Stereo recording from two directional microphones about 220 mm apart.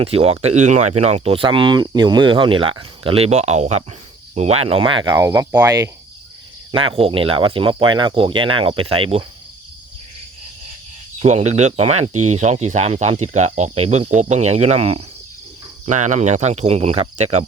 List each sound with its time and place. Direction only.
0.0 s speech: 25° right (ahead or behind)
11.2 s speech: 30° right (ahead or behind)